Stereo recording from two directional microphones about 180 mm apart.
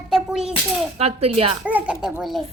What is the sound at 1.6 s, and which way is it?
Speech, 5° right (ahead or behind).